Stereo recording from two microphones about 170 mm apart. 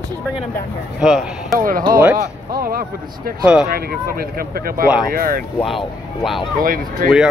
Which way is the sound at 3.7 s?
60° right (ahead or behind).